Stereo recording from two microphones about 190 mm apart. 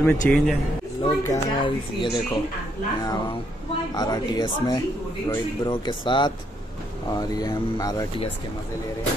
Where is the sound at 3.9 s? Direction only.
20° left (ahead or behind).